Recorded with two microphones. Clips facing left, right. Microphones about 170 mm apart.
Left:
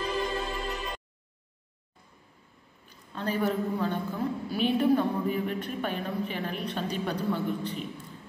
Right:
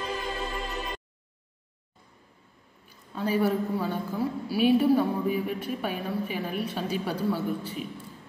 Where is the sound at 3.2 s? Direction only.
10° right (ahead or behind).